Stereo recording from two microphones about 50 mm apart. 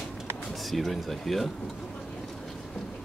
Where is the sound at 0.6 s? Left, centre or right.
Centre.